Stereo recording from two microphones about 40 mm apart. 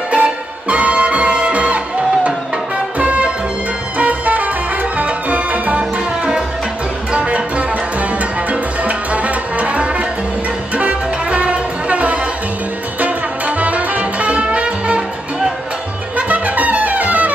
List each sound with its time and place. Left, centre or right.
0.1 s music: right
7.1 s music: right
13.6 s music: right
16.2 s music: right